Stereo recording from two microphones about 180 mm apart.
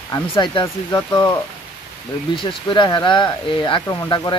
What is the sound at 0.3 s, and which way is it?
Speech, 30° left (ahead or behind).